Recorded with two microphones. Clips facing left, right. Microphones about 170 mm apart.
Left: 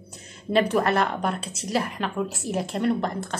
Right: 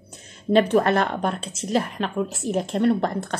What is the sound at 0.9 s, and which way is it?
Speech, 45° right (ahead or behind).